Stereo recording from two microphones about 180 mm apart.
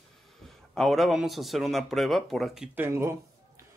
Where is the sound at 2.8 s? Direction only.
15° right (ahead or behind).